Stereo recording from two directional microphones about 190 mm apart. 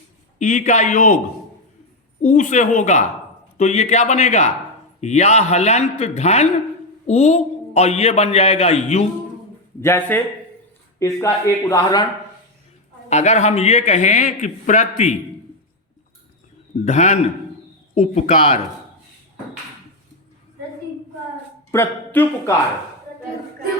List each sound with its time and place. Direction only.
0.3 s a man's voice: 40° left (ahead or behind)
2.2 s a man's voice: 40° left (ahead or behind)
9.8 s speech: 10° left (ahead or behind)
13.1 s a man's voice: 35° left (ahead or behind)
16.8 s a man's voice: 40° left (ahead or behind)
21.7 s speech: 10° left (ahead or behind)